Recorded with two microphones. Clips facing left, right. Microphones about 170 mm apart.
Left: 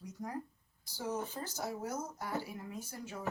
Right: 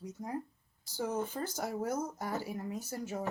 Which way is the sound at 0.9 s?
50° right (ahead or behind).